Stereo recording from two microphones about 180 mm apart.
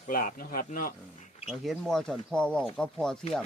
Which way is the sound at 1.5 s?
Centre (ahead or behind).